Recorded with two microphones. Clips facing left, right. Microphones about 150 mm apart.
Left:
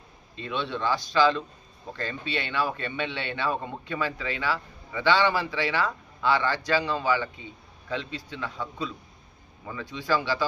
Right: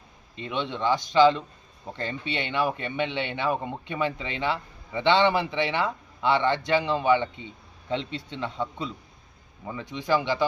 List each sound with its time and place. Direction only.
0.3 s a man's voice: 20° right (ahead or behind)